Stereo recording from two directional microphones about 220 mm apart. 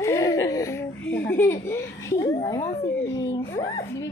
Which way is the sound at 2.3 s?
15° left (ahead or behind).